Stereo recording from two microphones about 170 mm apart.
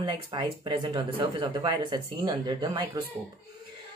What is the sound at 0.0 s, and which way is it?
Speech, 30° right (ahead or behind).